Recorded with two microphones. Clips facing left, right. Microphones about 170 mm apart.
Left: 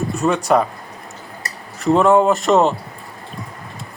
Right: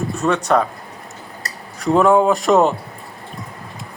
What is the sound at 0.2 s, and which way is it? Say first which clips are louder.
Speech: left 1 dB; 10° left (ahead or behind).